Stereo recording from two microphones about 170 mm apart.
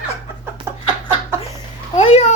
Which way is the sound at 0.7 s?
15° right (ahead or behind).